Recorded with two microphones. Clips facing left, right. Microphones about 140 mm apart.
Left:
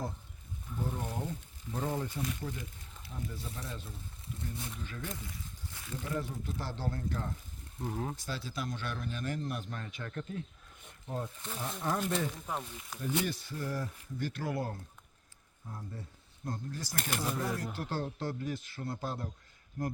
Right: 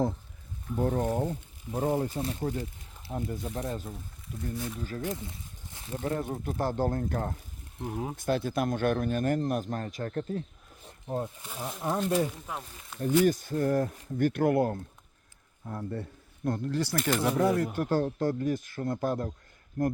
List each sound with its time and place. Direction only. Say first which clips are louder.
0.8 s a man's voice: right 10 dB; 55° right (ahead or behind)
2.0 s speech: right 6 dB; 35° right (ahead or behind)
3.1 s a man's voice: right 9 dB; 55° right (ahead or behind); by 5.0 s 40° right (ahead or behind)
5.0 s a sound: right 7 dB; 25° right (ahead or behind)
6.0 s a man's voice: right 6 dB; 50° right (ahead or behind)
7.8 s speech: right 3 dB; 10° right (ahead or behind)
8.1 s a man's voice: right 11 dB; 55° right (ahead or behind)
10.8 s snake: right 6 dB; 25° right (ahead or behind)
11.4 s speech: right 2 dB; 10° right (ahead or behind)
12.0 s speech: right 6 dB; 35° right (ahead or behind)
12.5 s speech: left 1 dB; centre (ahead or behind)
13.0 s a man's voice: right 10 dB; 45° right (ahead or behind)
15.6 s speech: right 10 dB; 70° right (ahead or behind)
17.7 s a man's voice: right 9 dB; 45° right (ahead or behind)